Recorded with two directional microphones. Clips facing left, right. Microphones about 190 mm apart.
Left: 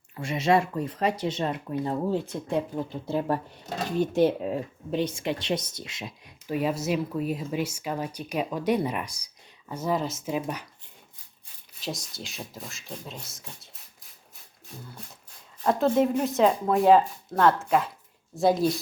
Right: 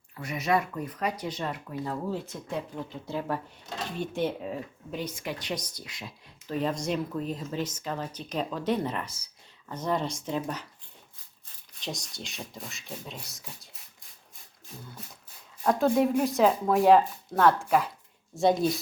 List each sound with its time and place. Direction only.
0.2 s speech: 25° left (ahead or behind)
4.9 s speech: 25° left (ahead or behind); by 10.7 s 10° left (ahead or behind)
11.8 s speech: centre (ahead or behind)
15.0 s speech: centre (ahead or behind)